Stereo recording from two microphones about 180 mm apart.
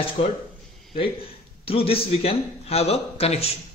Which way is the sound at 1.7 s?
30° left (ahead or behind).